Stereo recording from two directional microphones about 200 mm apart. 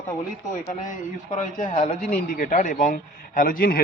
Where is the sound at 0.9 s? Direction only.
40° left (ahead or behind).